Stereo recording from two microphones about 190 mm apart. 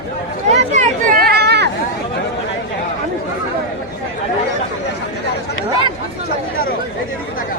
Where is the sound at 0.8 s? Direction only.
50° right (ahead or behind).